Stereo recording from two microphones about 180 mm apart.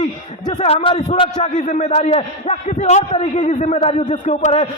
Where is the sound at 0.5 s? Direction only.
30° left (ahead or behind).